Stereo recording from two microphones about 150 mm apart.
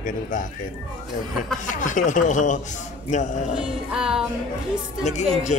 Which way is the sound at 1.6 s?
55° left (ahead or behind).